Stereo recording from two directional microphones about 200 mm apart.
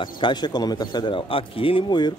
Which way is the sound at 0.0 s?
20° left (ahead or behind).